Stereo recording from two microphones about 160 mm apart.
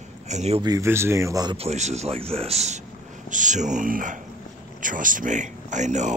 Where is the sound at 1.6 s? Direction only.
45° right (ahead or behind).